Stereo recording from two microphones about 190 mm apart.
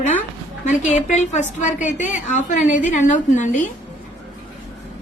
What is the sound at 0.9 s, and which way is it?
A woman's voice, 40° left (ahead or behind).